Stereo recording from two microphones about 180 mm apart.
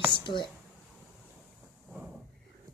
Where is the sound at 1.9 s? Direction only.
5° right (ahead or behind).